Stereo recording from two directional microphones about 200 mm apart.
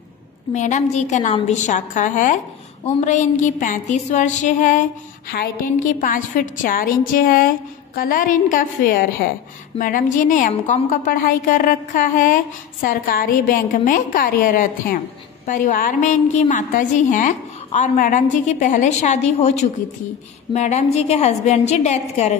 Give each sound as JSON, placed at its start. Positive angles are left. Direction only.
{"t": 0.5, "sound": "a woman's voice", "side_deg": 35}